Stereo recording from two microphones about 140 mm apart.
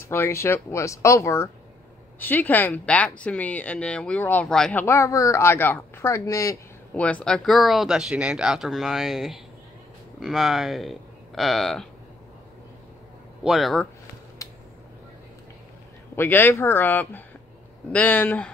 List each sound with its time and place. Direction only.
0.0 s speech: 20° left (ahead or behind)
4.8 s speech: 20° left (ahead or behind)
7.0 s speech: 10° left (ahead or behind)
13.4 s speech: centre (ahead or behind)
14.4 s a sound: 25° left (ahead or behind)
16.2 s speech: 15° left (ahead or behind)